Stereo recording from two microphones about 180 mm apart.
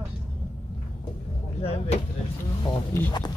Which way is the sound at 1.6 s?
35° left (ahead or behind).